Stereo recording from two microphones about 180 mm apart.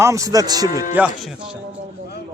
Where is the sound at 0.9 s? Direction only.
5° right (ahead or behind).